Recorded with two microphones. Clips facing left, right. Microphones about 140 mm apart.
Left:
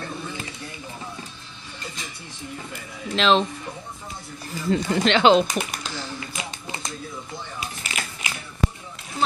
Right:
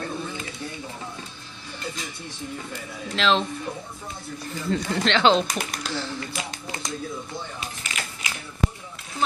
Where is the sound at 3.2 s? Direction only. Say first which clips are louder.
Left 3 dB; 20° left (ahead or behind).